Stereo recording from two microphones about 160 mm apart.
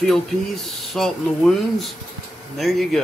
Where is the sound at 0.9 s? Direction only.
Centre (ahead or behind).